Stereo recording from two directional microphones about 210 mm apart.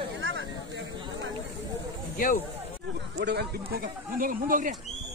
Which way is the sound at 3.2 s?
55° right (ahead or behind).